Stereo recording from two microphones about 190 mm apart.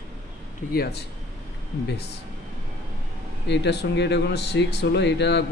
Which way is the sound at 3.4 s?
65° left (ahead or behind).